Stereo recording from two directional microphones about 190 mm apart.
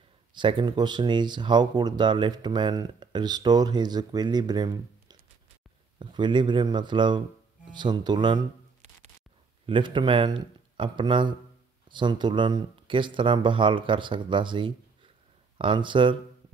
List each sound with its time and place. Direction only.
0.3 s speech: 25° right (ahead or behind)
9.7 s speech: 25° right (ahead or behind)